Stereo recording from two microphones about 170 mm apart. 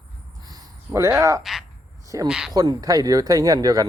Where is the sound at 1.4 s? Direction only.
Centre (ahead or behind).